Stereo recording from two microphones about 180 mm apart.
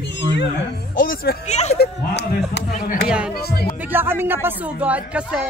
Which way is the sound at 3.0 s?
5° right (ahead or behind).